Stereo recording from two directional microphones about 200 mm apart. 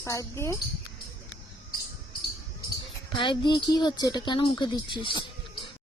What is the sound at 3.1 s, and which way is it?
Speech, 25° left (ahead or behind).